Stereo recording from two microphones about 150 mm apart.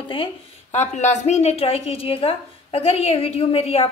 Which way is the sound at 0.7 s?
50° left (ahead or behind).